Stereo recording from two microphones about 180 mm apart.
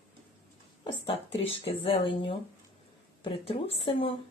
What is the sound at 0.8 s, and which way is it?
A woman's voice, 30° left (ahead or behind).